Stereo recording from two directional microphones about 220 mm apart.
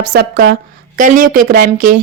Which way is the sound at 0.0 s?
45° right (ahead or behind).